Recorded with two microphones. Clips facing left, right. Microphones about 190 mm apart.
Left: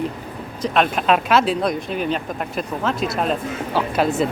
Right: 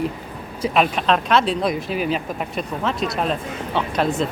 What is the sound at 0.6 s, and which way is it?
Speech, 5° right (ahead or behind).